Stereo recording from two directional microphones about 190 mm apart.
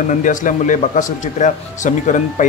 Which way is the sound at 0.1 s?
45° left (ahead or behind).